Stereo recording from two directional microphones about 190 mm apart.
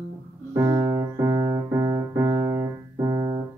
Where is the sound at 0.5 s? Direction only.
20° right (ahead or behind).